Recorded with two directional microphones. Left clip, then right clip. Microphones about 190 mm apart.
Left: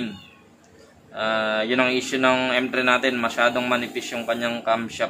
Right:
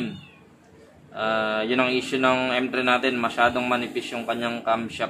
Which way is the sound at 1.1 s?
5° left (ahead or behind).